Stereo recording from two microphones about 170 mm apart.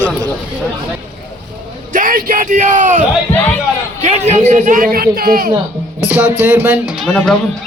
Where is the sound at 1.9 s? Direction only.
50° right (ahead or behind).